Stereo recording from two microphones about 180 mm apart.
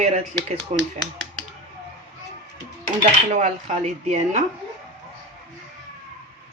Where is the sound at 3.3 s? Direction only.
40° right (ahead or behind).